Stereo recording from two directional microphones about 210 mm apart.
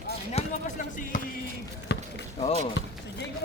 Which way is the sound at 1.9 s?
55° left (ahead or behind).